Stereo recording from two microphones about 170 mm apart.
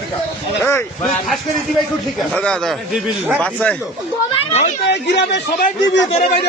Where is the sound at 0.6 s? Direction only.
15° left (ahead or behind).